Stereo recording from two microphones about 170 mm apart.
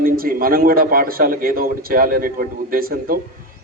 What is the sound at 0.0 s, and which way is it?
A man's voice, 60° right (ahead or behind).